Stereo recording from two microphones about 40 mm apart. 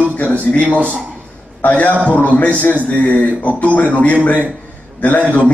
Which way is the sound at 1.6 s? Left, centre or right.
Left.